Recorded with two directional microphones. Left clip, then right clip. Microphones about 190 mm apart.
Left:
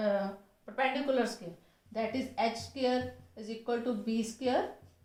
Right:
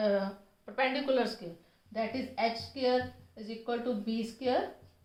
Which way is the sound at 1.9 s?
10° right (ahead or behind).